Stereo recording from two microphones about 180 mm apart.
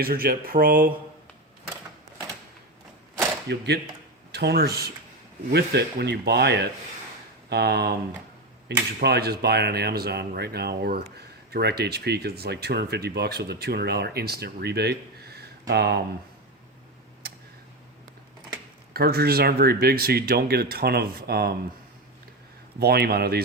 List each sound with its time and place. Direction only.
0.0 s speech: 55° right (ahead or behind)
3.5 s speech: 70° right (ahead or behind)
9.0 s speech: 65° right (ahead or behind)
18.9 s speech: 60° right (ahead or behind)
22.8 s speech: 60° right (ahead or behind)